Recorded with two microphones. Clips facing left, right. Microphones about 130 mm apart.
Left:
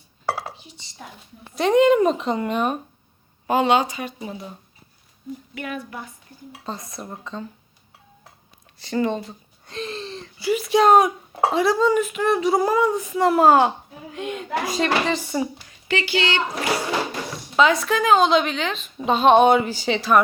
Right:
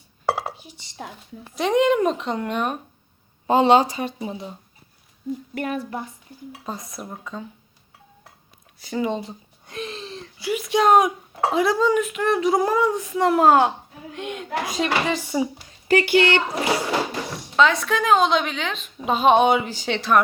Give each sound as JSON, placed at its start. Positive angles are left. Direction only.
{"t": 0.3, "sound": "dishes", "side_deg": -10}
{"t": 1.5, "sound": "speech", "side_deg": 0}
{"t": 3.4, "sound": "speech", "side_deg": -30}
{"t": 5.5, "sound": "speech", "side_deg": -35}
{"t": 6.5, "sound": "speech", "side_deg": 0}
{"t": 8.8, "sound": "speech", "side_deg": -5}
{"t": 9.8, "sound": "speech", "side_deg": 0}
{"t": 15.9, "sound": "speech", "side_deg": -50}
{"t": 17.6, "sound": "speech", "side_deg": 10}